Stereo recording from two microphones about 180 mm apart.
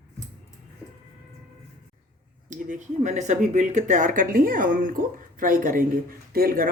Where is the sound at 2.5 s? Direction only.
45° right (ahead or behind).